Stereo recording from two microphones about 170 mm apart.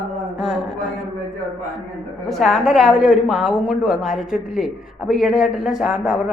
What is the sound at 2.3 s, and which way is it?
A woman's voice, centre (ahead or behind).